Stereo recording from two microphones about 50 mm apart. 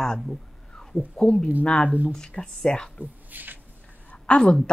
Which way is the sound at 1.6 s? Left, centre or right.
Left.